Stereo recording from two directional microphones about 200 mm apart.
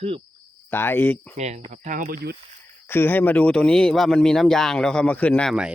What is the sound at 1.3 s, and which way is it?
Speech, 35° right (ahead or behind).